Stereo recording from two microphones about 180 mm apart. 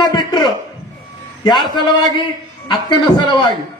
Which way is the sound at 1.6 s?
25° left (ahead or behind).